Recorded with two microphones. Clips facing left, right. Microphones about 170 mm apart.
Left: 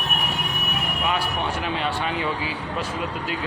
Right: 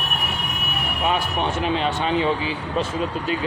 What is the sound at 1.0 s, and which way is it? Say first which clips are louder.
Speech: right 4 dB; 25° right (ahead or behind).